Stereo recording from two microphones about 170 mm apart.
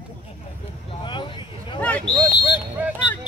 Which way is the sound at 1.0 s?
30° left (ahead or behind).